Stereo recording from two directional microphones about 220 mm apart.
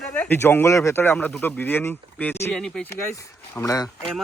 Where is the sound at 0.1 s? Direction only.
10° left (ahead or behind).